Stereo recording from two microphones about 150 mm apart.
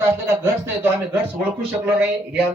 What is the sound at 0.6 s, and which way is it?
Speech, 15° right (ahead or behind).